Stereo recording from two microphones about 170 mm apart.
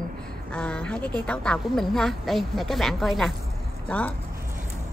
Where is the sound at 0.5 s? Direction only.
10° left (ahead or behind).